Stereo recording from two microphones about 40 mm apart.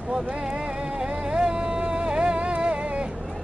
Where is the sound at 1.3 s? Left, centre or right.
Right.